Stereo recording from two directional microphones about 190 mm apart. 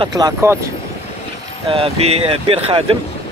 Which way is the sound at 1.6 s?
30° right (ahead or behind).